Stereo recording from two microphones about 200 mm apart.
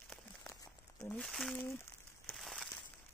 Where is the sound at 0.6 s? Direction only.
15° left (ahead or behind).